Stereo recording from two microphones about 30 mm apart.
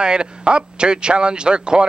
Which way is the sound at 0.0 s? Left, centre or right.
Right.